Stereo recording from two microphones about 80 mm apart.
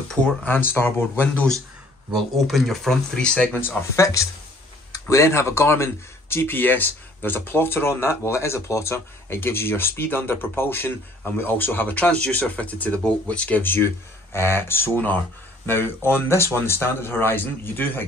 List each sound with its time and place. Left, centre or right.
0.1 s speech: centre
0.5 s speech: left
2.1 s speech: centre
3.6 s speech: left